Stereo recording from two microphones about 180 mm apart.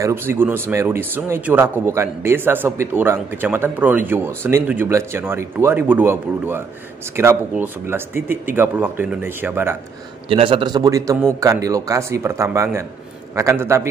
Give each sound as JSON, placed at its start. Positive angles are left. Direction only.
{"t": 0.0, "sound": "speech", "side_deg": -15}
{"t": 10.3, "sound": "a man's voice", "side_deg": -30}